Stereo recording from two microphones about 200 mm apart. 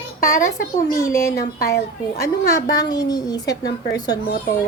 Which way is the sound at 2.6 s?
20° left (ahead or behind).